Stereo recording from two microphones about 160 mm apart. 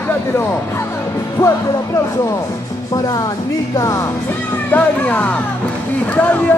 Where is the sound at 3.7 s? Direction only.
20° left (ahead or behind).